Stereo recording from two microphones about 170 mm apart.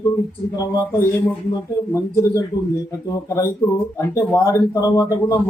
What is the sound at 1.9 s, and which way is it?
Speech, 15° left (ahead or behind).